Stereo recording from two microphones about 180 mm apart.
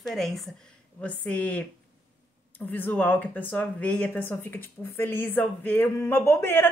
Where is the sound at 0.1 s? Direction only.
Centre (ahead or behind).